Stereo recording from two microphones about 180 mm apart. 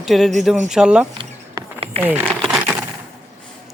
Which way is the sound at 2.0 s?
10° right (ahead or behind).